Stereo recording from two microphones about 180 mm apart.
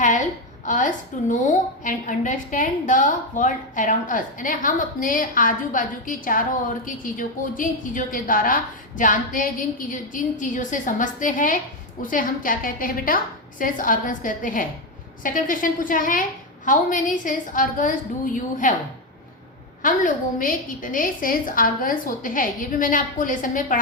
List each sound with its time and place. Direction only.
0.6 s a woman's voice: 45° left (ahead or behind)
19.8 s a woman's voice: 50° left (ahead or behind)